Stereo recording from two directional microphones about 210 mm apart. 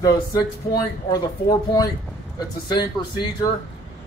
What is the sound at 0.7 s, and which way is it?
Speech, 20° left (ahead or behind).